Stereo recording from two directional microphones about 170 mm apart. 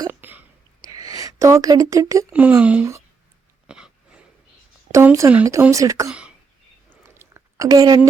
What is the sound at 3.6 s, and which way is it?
Throat clearing, 5° right (ahead or behind).